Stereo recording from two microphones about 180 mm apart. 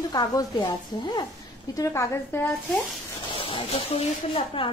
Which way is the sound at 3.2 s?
30° left (ahead or behind).